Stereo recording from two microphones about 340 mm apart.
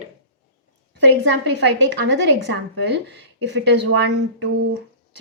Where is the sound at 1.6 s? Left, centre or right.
Right.